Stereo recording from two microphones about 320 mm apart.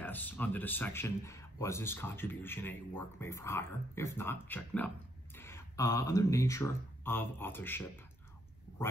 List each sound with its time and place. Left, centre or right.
0.0 s speech: centre